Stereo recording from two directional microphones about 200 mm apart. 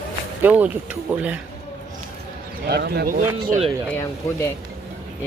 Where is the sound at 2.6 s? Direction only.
50° right (ahead or behind).